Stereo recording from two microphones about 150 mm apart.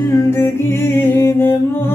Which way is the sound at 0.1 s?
15° left (ahead or behind).